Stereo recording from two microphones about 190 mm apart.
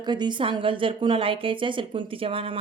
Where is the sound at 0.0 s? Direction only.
20° right (ahead or behind).